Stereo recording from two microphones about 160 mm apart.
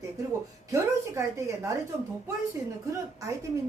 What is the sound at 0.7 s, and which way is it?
Speech, 15° right (ahead or behind).